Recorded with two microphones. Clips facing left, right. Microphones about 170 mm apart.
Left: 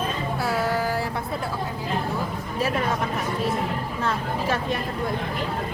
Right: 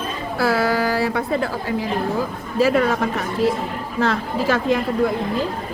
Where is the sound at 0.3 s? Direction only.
90° right.